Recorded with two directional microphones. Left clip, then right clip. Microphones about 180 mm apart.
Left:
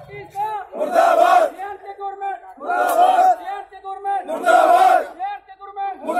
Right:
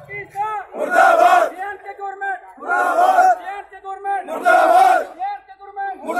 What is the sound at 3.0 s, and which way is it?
Crowd, 15° left (ahead or behind).